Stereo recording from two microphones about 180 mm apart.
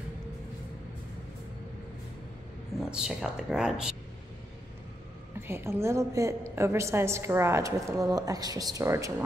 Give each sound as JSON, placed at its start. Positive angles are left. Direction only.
{"t": 2.8, "sound": "speech", "side_deg": -5}
{"t": 5.5, "sound": "a woman's voice", "side_deg": -15}